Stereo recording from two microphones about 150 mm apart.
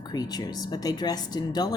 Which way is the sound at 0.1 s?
25° left (ahead or behind).